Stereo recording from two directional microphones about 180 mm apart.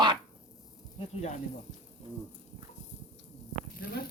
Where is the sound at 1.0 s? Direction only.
40° left (ahead or behind).